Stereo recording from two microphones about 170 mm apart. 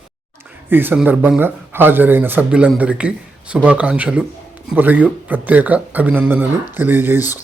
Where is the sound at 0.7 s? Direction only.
10° right (ahead or behind).